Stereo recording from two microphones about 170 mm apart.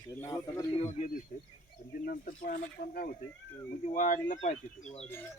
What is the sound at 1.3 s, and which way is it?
Speech, 55° left (ahead or behind).